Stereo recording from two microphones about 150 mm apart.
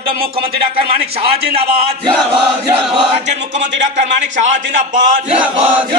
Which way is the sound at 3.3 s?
50° right (ahead or behind).